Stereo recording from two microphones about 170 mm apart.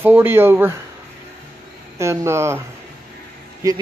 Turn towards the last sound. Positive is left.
turn(degrees=-20)  # may be behind; listen again after turning